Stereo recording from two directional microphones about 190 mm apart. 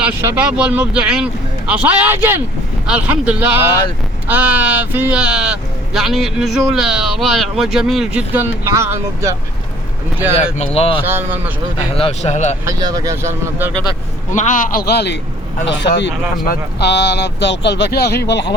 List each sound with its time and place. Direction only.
0.0 s speech: 10° right (ahead or behind)
10.8 s speech: 30° left (ahead or behind)
11.0 s speech: 10° right (ahead or behind)
11.9 s speech: 30° left (ahead or behind)
12.6 s speech: 20° right (ahead or behind)
14.3 s a man's voice: 40° left (ahead or behind); by 18.4 s 60° left (ahead or behind)